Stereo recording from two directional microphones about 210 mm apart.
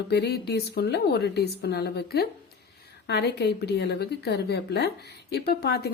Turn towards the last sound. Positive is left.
turn(degrees=50)  # may be behind; listen again after turning